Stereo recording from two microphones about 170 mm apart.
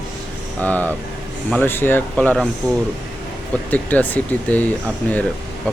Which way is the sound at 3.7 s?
10° left (ahead or behind).